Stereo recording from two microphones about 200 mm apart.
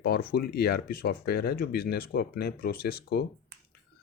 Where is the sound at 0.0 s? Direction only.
50° left (ahead or behind).